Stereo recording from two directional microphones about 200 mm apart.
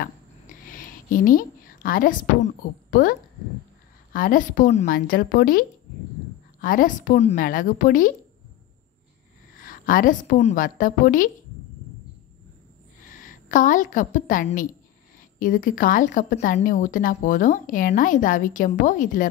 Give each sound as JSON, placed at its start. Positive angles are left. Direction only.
{"t": 0.7, "sound": "a woman's voice", "side_deg": 45}
{"t": 9.6, "sound": "a woman's voice", "side_deg": 45}
{"t": 13.2, "sound": "a woman's voice", "side_deg": 40}